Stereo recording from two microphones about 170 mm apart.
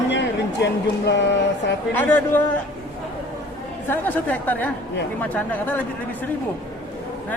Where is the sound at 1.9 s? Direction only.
10° left (ahead or behind).